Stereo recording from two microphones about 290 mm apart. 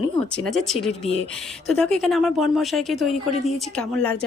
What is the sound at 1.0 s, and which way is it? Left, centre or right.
Speech, left.